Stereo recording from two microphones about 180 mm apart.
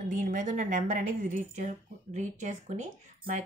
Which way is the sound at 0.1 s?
45° right (ahead or behind).